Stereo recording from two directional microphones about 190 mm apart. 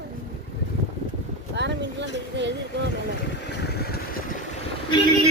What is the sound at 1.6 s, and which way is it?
Speech, 65° right (ahead or behind).